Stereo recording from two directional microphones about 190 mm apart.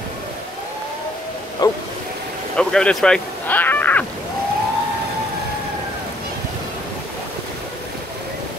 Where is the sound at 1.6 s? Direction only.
20° left (ahead or behind).